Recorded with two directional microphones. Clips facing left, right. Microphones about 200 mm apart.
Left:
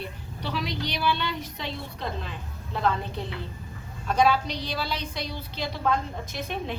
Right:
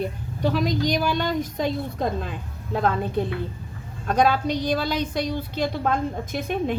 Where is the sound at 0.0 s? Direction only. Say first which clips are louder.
Right 10 dB; 45° right (ahead or behind).